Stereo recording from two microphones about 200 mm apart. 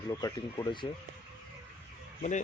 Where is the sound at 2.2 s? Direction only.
35° left (ahead or behind).